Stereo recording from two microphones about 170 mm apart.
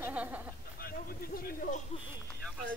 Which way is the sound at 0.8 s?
60° left (ahead or behind).